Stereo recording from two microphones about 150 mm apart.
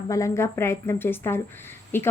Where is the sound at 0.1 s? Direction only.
20° left (ahead or behind).